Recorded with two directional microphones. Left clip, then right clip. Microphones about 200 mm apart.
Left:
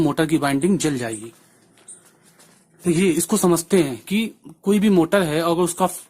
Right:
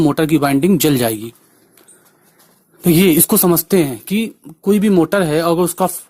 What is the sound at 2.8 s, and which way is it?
Speech, 45° right (ahead or behind).